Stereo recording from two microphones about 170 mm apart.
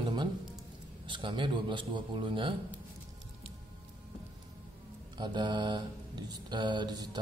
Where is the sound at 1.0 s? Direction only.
30° right (ahead or behind).